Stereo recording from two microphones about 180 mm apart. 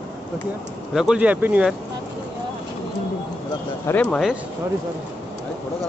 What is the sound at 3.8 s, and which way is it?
Speech, 10° left (ahead or behind).